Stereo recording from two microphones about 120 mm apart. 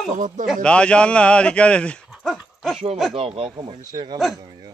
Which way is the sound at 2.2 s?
Centre (ahead or behind).